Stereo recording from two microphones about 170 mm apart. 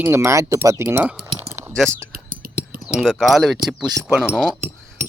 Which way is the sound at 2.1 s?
60° right (ahead or behind).